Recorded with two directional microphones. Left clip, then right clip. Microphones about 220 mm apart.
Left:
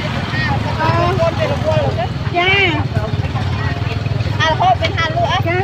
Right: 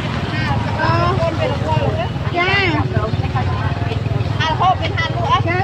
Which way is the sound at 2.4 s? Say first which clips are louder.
Left 3 dB; 20° right (ahead or behind).